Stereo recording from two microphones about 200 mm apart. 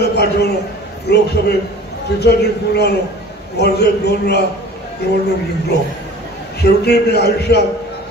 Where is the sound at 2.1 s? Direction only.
55° left (ahead or behind).